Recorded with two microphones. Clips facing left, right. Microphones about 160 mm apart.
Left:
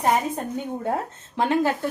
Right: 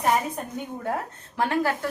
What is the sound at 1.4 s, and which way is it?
Speech, 20° left (ahead or behind).